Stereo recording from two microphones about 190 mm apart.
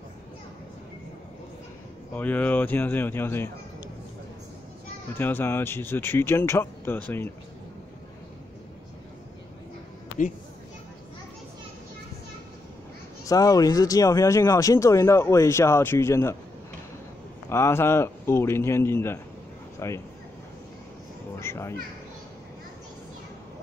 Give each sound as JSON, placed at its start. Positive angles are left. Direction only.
{"t": 2.1, "sound": "speech", "side_deg": 10}
{"t": 5.1, "sound": "speech", "side_deg": 10}
{"t": 13.3, "sound": "speech", "side_deg": 20}
{"t": 17.5, "sound": "speech", "side_deg": 15}
{"t": 21.4, "sound": "speech", "side_deg": 15}